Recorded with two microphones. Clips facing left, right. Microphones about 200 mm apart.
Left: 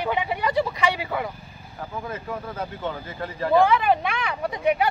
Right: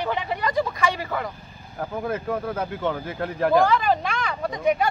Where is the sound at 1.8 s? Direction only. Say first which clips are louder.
Right 5 dB; 60° right (ahead or behind).